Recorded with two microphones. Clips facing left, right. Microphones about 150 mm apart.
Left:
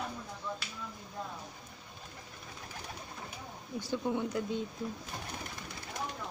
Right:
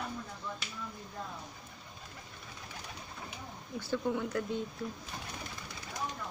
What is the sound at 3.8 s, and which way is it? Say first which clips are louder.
Speech: even; 15° left (ahead or behind).